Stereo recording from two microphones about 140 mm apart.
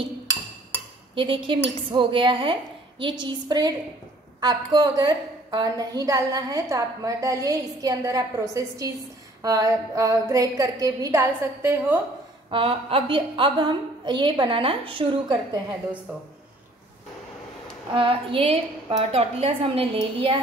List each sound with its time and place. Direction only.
1.1 s a woman's voice: 35° right (ahead or behind); by 12.0 s 20° right (ahead or behind)
12.4 s a woman's voice: 40° right (ahead or behind)
17.9 s a woman's voice: 40° right (ahead or behind)